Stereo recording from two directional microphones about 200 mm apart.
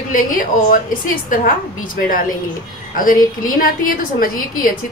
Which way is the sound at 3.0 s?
45° left (ahead or behind).